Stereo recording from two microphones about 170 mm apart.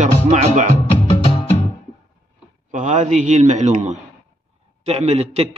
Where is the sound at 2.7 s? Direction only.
45° right (ahead or behind).